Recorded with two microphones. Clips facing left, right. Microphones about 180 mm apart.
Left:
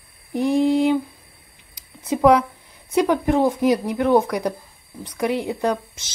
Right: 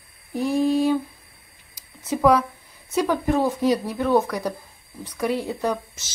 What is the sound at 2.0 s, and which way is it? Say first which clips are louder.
Speech: left 3 dB; 20° left (ahead or behind).